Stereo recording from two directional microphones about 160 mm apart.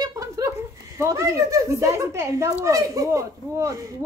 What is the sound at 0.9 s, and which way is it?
Speech, 20° right (ahead or behind).